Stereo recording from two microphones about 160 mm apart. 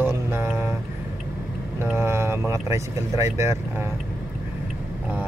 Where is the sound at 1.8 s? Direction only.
15° right (ahead or behind).